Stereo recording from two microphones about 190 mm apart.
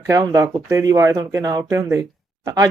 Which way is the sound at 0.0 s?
20° right (ahead or behind).